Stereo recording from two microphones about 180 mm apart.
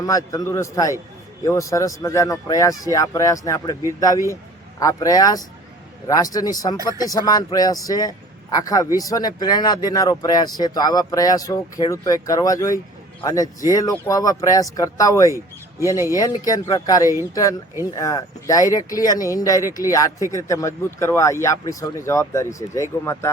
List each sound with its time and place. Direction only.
0.0 s speech: 20° left (ahead or behind)